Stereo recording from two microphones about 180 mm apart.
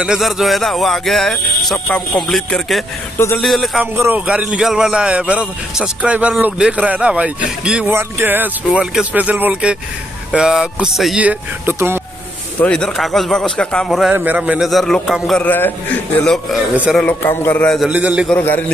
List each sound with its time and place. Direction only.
0.0 s a man's voice: 5° right (ahead or behind)
3.8 s a man's voice: 10° right (ahead or behind)
12.5 s a man's voice: 5° left (ahead or behind)
17.0 s a man's voice: 10° left (ahead or behind); by 18.3 s 5° right (ahead or behind)
18.3 s a man's voice: 10° left (ahead or behind)